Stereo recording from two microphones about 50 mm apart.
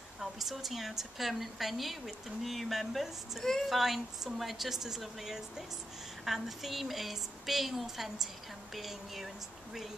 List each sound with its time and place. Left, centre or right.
0.2 s a woman's voice: centre